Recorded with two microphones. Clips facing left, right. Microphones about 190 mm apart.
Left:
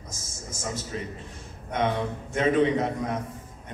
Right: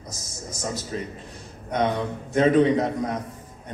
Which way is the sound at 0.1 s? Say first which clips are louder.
Right 2 dB; 40° right (ahead or behind).